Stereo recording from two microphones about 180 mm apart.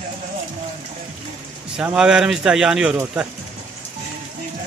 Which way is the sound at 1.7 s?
5° right (ahead or behind).